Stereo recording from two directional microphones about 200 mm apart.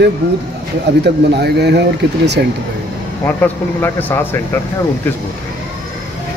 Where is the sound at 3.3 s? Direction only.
10° left (ahead or behind).